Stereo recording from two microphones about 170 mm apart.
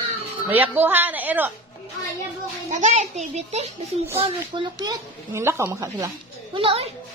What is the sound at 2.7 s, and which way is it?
Speech, 45° right (ahead or behind).